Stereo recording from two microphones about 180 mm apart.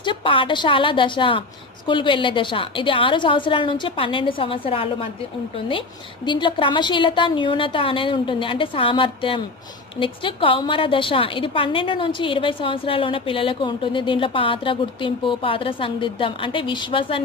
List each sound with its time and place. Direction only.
0.0 s a woman's voice: 30° left (ahead or behind)